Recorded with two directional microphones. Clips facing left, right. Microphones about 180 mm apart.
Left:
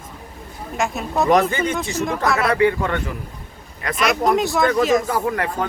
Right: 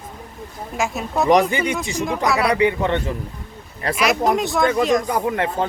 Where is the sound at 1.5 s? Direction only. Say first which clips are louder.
Even; 15° right (ahead or behind).